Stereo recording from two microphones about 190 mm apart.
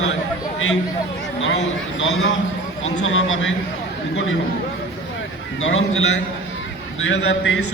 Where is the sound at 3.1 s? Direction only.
90° left.